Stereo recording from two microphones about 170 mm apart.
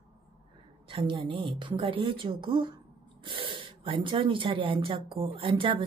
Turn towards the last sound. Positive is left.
turn(degrees=-30)  # may be behind; listen again after turning